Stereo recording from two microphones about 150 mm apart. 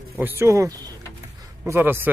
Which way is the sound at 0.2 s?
15° right (ahead or behind).